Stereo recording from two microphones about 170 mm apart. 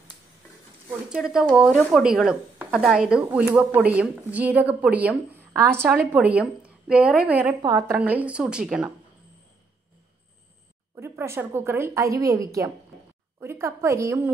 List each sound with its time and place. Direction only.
1.0 s speech: 5° right (ahead or behind)
11.0 s speech: 15° right (ahead or behind)